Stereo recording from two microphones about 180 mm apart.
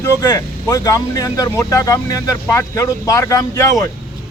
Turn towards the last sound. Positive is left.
turn(degrees=20)  # may be behind; listen again after turning